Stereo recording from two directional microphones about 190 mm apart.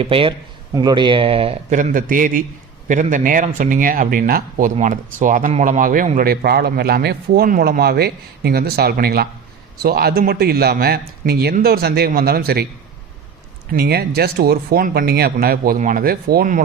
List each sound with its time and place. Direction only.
0.0 s speech: 30° right (ahead or behind)
1.7 s a man's voice: 45° right (ahead or behind)
13.7 s a man's voice: 55° right (ahead or behind)